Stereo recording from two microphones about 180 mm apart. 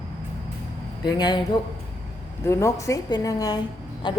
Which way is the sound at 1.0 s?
25° left (ahead or behind).